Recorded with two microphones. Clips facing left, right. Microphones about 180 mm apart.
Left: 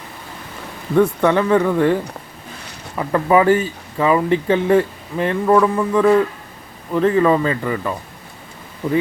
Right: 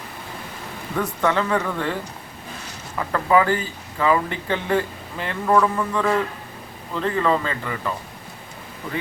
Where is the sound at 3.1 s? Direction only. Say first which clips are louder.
Left 5 dB; 20° left (ahead or behind).